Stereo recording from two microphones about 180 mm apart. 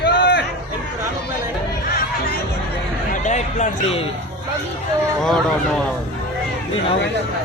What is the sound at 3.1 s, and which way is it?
A man's voice, 40° left (ahead or behind).